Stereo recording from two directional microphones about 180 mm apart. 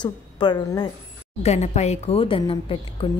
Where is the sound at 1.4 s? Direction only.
40° left (ahead or behind).